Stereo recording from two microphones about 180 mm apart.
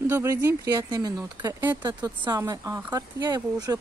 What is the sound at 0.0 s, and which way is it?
Speech, 15° right (ahead or behind).